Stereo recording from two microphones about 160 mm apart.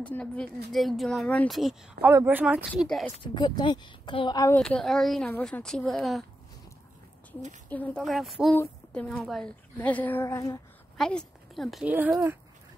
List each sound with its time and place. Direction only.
0.0 s a woman's voice: 5° left (ahead or behind)
3.3 s speech: 25° left (ahead or behind)
4.6 s speech: 5° left (ahead or behind)
7.7 s a woman's voice: 10° left (ahead or behind)
11.0 s speech: 5° left (ahead or behind)
11.9 s speech: 10° right (ahead or behind)